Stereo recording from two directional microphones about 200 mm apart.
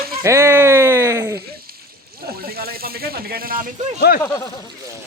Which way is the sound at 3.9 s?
50° left (ahead or behind).